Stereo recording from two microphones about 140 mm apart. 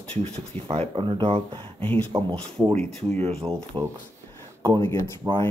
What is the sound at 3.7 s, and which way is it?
Speech, 35° right (ahead or behind).